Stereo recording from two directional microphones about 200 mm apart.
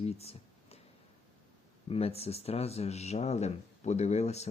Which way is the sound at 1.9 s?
30° left (ahead or behind).